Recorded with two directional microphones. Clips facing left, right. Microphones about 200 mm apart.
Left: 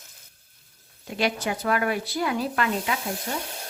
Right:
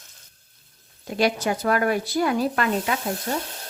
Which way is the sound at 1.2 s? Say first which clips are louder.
Right 4 dB; 40° right (ahead or behind).